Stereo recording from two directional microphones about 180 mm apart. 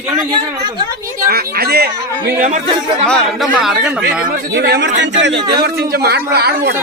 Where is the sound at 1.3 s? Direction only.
55° right (ahead or behind).